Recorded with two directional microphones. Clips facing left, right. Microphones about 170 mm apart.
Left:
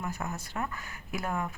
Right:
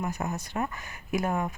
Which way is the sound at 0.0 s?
20° right (ahead or behind).